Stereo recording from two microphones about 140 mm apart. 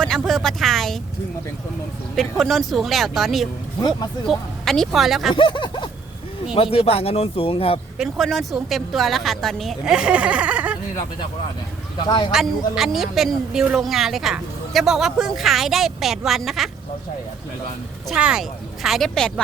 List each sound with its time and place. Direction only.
0.0 s a woman's voice: centre (ahead or behind)
2.1 s a woman's voice: centre (ahead or behind)
3.8 s speech: 30° left (ahead or behind)
4.3 s a woman's voice: centre (ahead or behind)
5.3 s speech: 35° left (ahead or behind)
7.9 s a woman's voice: centre (ahead or behind)
12.0 s speech: 30° left (ahead or behind)
12.3 s a woman's voice: 5° right (ahead or behind)
18.1 s a woman's voice: 5° right (ahead or behind)